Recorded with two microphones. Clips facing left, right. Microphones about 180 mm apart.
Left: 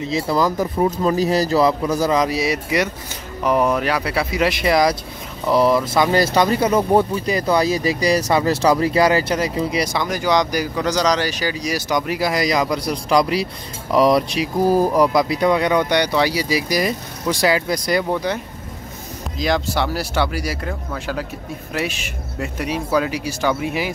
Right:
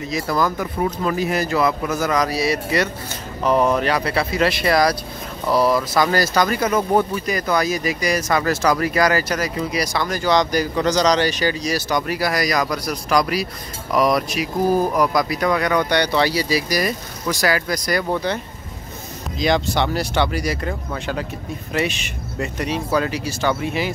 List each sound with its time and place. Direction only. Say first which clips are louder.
0.0 s speech: left 2 dB; 25° left (ahead or behind)
15.7 s speech: left 1 dB; 15° left (ahead or behind)
18.1 s speech: left 1 dB; 10° left (ahead or behind)